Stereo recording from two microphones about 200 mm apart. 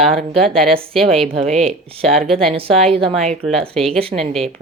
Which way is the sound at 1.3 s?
30° right (ahead or behind).